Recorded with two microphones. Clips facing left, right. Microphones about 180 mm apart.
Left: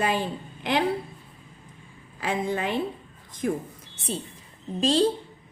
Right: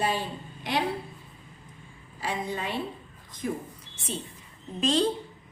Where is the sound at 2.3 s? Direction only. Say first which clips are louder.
Left 5 dB; 50° left (ahead or behind).